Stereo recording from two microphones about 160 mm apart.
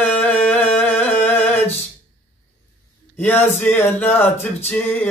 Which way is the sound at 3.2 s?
10° left (ahead or behind).